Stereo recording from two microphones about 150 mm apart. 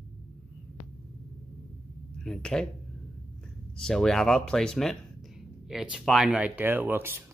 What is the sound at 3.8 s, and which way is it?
Speech, 5° left (ahead or behind).